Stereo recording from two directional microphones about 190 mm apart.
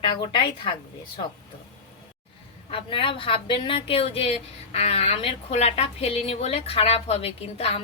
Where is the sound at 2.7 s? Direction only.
30° left (ahead or behind).